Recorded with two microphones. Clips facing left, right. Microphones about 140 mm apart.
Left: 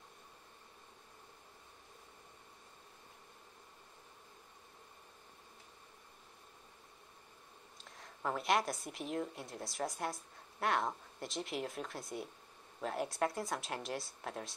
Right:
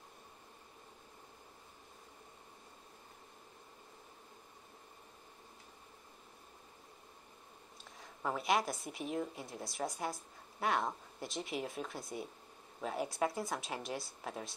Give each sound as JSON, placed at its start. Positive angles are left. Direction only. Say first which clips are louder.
{"t": 8.0, "sound": "a woman's voice", "louder": "even", "side_deg": 0}